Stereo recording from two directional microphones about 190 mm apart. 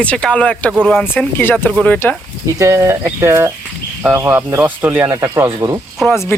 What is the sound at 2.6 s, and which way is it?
Speech, 15° right (ahead or behind).